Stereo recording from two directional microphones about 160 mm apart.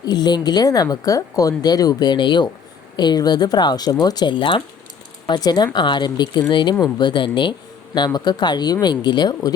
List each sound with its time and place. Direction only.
0.0 s speech: 25° left (ahead or behind)